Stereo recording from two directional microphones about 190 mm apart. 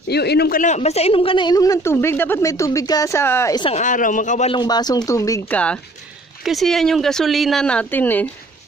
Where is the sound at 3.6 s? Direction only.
40° left (ahead or behind).